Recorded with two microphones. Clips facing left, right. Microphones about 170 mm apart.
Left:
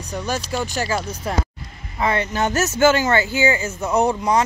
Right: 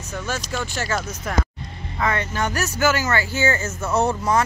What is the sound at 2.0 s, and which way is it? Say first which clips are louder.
Speech: left 3 dB; 25° left (ahead or behind).